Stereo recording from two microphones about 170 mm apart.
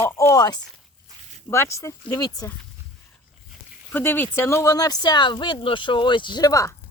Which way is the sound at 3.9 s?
10° left (ahead or behind).